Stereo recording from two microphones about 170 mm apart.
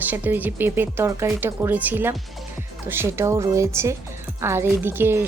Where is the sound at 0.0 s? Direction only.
10° right (ahead or behind).